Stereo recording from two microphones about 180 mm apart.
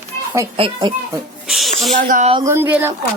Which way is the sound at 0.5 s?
30° right (ahead or behind).